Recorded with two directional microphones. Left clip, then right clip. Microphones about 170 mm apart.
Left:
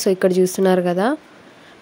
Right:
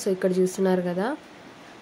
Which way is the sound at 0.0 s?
55° left (ahead or behind).